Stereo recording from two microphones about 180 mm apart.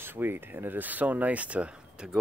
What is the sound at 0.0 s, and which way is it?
Speech, 10° right (ahead or behind).